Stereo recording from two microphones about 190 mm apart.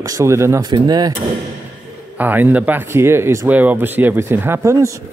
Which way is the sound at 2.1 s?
10° right (ahead or behind).